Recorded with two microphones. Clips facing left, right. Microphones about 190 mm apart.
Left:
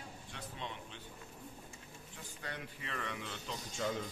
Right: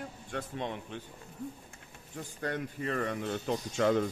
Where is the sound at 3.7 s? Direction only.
70° right (ahead or behind).